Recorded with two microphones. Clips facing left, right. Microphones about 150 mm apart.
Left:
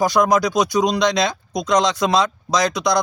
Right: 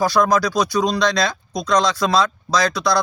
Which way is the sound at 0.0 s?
20° left (ahead or behind).